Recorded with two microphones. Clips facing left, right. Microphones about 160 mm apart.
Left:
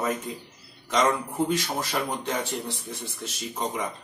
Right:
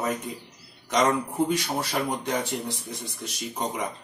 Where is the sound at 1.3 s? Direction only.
10° right (ahead or behind).